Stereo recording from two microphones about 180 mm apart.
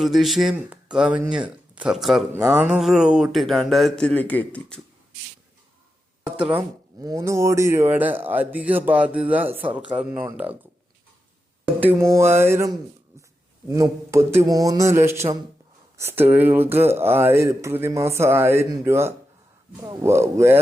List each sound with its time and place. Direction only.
0.0 s speech: centre (ahead or behind)
6.3 s speech: 10° right (ahead or behind)
7.0 s speech: 20° right (ahead or behind)
11.8 s speech: 15° right (ahead or behind)